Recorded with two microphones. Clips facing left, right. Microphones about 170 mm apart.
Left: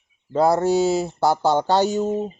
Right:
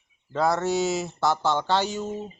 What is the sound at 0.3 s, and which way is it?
Speech, 30° left (ahead or behind).